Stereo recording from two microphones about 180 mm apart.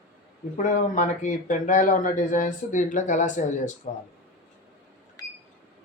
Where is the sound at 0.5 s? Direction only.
40° left (ahead or behind).